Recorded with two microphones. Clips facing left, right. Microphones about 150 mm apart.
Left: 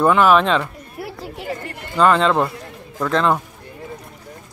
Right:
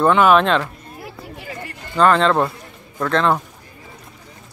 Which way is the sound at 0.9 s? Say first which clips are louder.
Left 8 dB; 70° left (ahead or behind).